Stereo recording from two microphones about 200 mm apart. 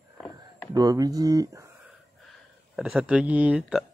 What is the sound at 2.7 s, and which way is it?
Speech, 5° right (ahead or behind).